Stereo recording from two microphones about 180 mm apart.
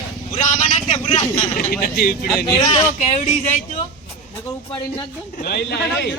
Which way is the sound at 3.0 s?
40° left (ahead or behind).